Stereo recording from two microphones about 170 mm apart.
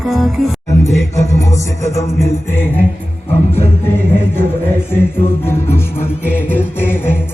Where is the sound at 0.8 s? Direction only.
20° left (ahead or behind).